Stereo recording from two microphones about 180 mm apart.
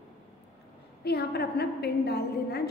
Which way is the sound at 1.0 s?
65° left (ahead or behind).